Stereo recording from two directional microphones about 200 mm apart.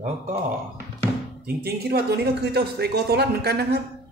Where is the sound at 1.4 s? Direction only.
50° right (ahead or behind).